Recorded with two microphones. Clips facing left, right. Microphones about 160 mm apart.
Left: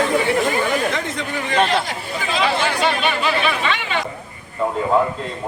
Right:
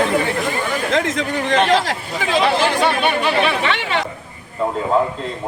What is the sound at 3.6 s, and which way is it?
Speech, 75° right (ahead or behind).